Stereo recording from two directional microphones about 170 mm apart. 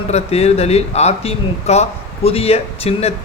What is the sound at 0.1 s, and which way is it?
Speech, 40° left (ahead or behind).